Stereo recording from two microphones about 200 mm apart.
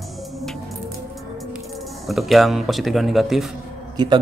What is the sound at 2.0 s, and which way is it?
Speech, centre (ahead or behind).